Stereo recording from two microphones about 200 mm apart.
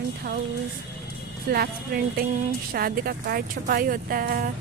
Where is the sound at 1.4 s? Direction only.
50° right (ahead or behind).